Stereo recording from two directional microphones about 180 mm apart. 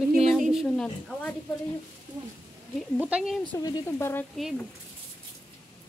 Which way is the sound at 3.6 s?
20° left (ahead or behind).